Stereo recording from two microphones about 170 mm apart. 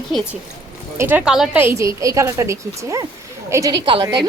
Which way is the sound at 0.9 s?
10° right (ahead or behind).